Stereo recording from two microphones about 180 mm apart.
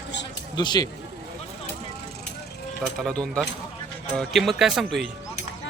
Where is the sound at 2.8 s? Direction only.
Centre (ahead or behind).